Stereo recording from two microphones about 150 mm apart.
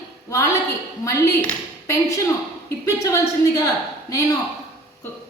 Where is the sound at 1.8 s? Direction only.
20° left (ahead or behind).